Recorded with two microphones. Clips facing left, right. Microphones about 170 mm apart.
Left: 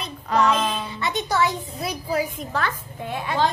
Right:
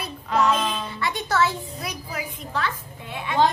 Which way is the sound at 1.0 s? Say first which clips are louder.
Even; 20° left (ahead or behind).